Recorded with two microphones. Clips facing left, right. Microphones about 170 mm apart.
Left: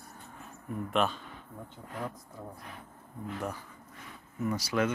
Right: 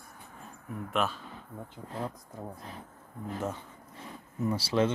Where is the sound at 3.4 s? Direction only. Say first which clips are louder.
Right 3 dB; 25° right (ahead or behind).